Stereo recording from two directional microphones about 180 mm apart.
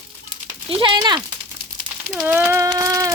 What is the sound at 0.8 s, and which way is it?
Speech, 25° right (ahead or behind).